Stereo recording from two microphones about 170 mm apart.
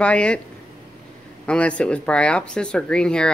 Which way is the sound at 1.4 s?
5° left (ahead or behind).